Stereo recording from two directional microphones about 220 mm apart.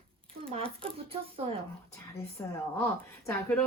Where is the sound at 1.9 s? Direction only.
15° left (ahead or behind).